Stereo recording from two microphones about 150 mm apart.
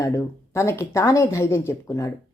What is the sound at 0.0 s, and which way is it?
Speech, 20° left (ahead or behind).